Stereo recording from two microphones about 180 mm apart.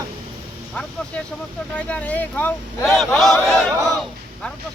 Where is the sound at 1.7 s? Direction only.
10° left (ahead or behind).